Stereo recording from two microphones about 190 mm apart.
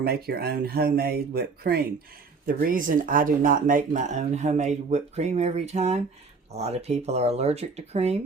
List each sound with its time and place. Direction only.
0.0 s speech: 55° right (ahead or behind); by 8.2 s 35° right (ahead or behind)